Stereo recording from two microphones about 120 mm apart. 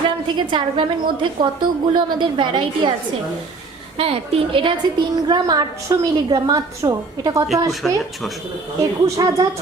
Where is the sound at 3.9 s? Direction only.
50° right (ahead or behind).